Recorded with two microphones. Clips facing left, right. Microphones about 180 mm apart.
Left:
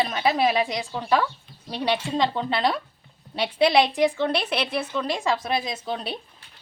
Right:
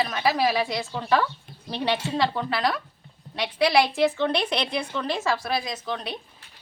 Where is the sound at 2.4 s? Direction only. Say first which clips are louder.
Left 2 dB; 25° left (ahead or behind).